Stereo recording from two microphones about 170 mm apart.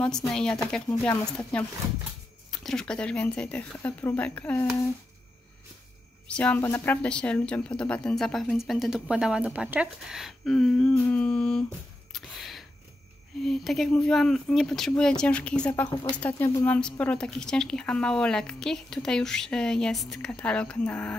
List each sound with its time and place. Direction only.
0.0 s a woman's voice: 5° left (ahead or behind)
6.2 s a woman's voice: 5° left (ahead or behind)
12.1 s a sound: centre (ahead or behind)
13.4 s a woman's voice: centre (ahead or behind)
15.9 s speech: 25° left (ahead or behind)
16.2 s a woman's voice: 10° left (ahead or behind)